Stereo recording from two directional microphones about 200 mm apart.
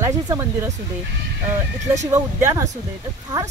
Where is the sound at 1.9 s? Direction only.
15° right (ahead or behind).